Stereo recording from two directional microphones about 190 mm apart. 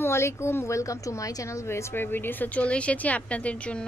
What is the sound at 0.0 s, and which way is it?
A woman's voice, 15° left (ahead or behind).